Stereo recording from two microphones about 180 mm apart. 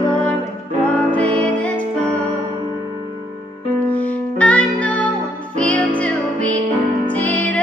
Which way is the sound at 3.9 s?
10° left (ahead or behind).